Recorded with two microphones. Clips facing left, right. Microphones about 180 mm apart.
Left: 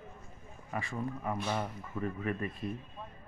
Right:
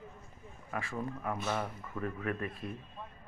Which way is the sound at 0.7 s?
Centre (ahead or behind).